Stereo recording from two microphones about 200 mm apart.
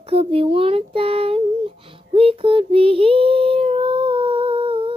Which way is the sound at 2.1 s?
25° right (ahead or behind).